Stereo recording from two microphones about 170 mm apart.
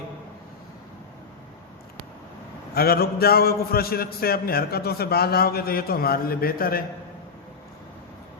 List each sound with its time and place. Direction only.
2.7 s a man's voice: 65° left (ahead or behind)